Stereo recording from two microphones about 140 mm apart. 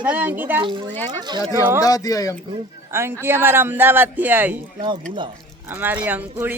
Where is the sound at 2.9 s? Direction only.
15° right (ahead or behind).